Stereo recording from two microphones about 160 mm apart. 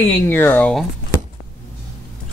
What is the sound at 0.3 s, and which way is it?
Speech, 10° left (ahead or behind).